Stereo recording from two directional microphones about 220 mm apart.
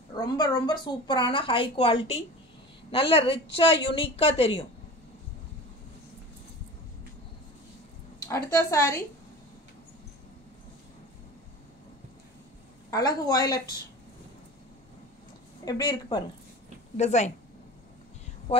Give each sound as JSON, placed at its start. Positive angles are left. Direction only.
{"t": 0.1, "sound": "a woman's voice", "side_deg": 15}
{"t": 8.2, "sound": "a woman's voice", "side_deg": 15}
{"t": 12.9, "sound": "a woman's voice", "side_deg": 15}
{"t": 15.7, "sound": "a woman's voice", "side_deg": 15}
{"t": 16.9, "sound": "speech", "side_deg": 30}